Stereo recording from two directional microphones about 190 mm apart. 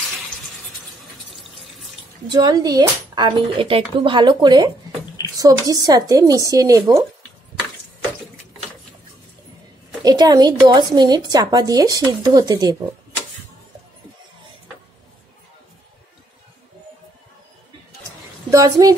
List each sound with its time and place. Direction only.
2.2 s a woman's voice: 20° right (ahead or behind)
10.0 s a woman's voice: 20° right (ahead or behind)
18.5 s a woman's voice: 20° right (ahead or behind)